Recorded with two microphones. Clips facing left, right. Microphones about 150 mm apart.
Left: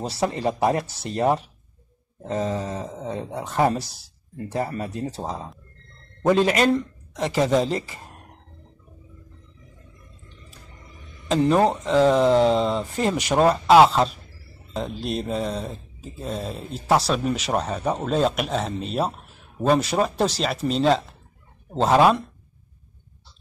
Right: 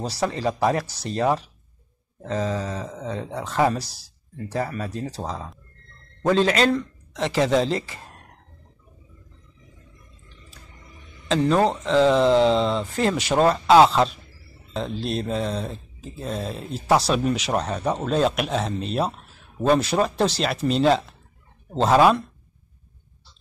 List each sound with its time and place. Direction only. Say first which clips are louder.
0.2 s speech: left 1 dB; 20° left (ahead or behind)
11.2 s speech: left 1 dB; 10° left (ahead or behind)